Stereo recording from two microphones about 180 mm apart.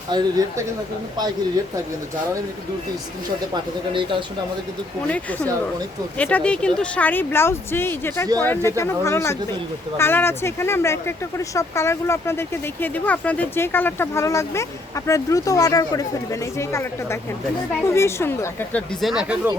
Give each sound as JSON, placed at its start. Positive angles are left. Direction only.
{"t": 0.1, "sound": "speech", "side_deg": -25}
{"t": 3.5, "sound": "speech", "side_deg": -30}
{"t": 5.0, "sound": "speech", "side_deg": 5}
{"t": 19.0, "sound": "speech", "side_deg": -5}